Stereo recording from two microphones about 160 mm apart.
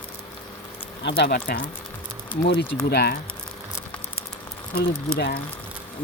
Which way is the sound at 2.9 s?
90° left.